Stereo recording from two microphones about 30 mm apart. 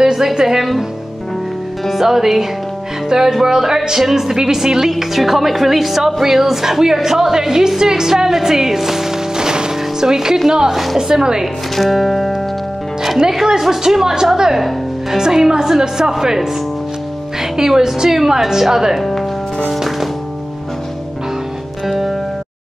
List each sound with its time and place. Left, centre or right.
0.0 s speech: centre
2.0 s music: centre
6.2 s a woman's voice: centre
10.7 s a woman's voice: centre
11.0 s speech: centre
11.7 s music: centre
13.2 s music: centre
15.8 s speech: right
17.4 s music: centre
21.8 s music: centre